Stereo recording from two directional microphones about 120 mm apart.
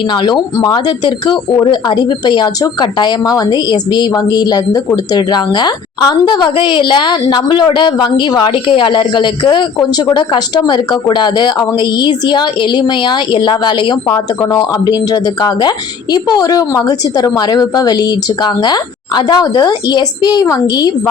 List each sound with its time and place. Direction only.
0.3 s a woman's voice: 35° left (ahead or behind)